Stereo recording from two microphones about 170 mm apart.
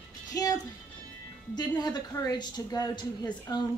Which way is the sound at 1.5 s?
25° left (ahead or behind).